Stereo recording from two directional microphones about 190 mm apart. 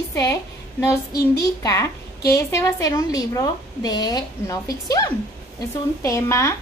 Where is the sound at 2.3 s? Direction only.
15° left (ahead or behind).